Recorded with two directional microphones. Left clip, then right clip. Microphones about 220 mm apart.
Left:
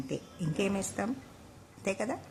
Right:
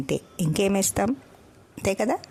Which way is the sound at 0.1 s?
50° right (ahead or behind).